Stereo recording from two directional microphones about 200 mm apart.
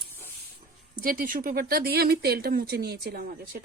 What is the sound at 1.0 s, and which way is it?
Speech, 45° right (ahead or behind).